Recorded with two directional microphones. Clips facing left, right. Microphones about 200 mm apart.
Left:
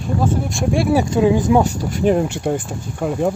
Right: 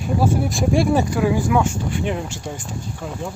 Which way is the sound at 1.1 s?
20° left (ahead or behind).